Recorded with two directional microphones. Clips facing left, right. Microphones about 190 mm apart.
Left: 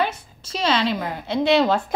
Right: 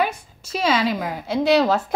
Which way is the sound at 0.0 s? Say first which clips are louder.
Right 1 dB; 10° right (ahead or behind).